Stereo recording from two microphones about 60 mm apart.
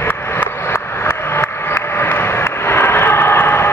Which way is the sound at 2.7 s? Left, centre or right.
Left.